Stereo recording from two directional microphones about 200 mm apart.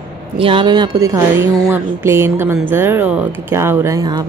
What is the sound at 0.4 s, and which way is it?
Speech, 25° right (ahead or behind).